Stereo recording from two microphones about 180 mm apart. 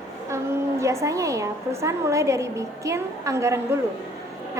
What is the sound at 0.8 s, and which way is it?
A woman's voice, 15° right (ahead or behind).